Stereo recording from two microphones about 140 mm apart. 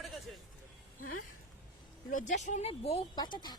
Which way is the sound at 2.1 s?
65° left (ahead or behind).